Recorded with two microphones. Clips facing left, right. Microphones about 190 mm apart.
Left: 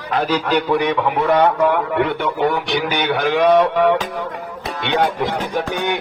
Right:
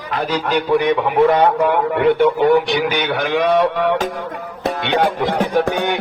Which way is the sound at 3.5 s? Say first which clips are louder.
Left 3 dB; 55° left (ahead or behind).